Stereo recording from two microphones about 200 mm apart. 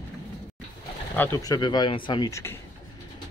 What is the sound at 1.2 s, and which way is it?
Speech, 15° left (ahead or behind).